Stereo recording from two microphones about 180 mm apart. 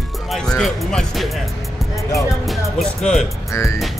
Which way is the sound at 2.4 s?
Centre (ahead or behind).